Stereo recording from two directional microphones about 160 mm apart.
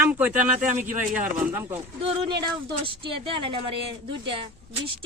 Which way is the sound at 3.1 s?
30° right (ahead or behind).